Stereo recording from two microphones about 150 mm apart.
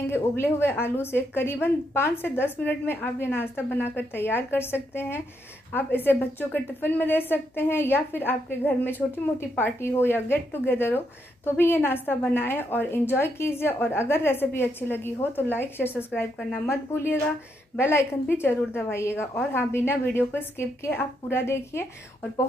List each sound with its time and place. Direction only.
0.0 s a woman's voice: 15° left (ahead or behind)